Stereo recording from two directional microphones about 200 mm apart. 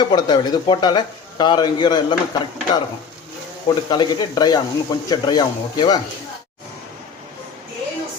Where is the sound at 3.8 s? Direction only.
20° left (ahead or behind).